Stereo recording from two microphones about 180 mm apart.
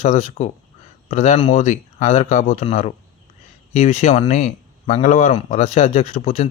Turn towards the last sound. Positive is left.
turn(degrees=40)  # may be behind; listen again after turning